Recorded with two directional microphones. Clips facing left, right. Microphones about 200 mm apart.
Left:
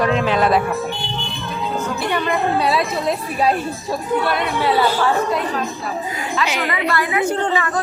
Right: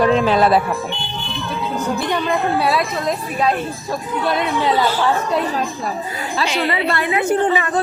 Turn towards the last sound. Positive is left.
turn(degrees=-15)  # may be behind; listen again after turning